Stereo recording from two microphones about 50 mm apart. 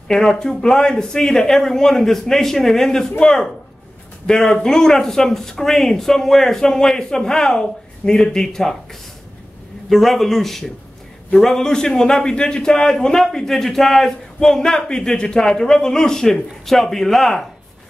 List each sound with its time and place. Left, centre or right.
0.1 s a man's voice: centre
9.8 s a man's voice: centre